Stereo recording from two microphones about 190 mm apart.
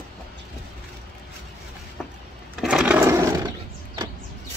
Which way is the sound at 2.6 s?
5° right (ahead or behind).